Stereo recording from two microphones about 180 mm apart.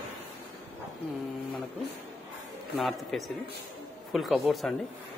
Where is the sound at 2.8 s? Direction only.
Centre (ahead or behind).